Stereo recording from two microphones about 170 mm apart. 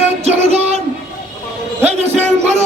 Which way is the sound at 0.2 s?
40° right (ahead or behind).